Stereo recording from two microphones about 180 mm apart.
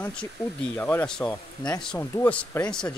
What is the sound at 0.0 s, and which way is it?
Speech, 5° left (ahead or behind).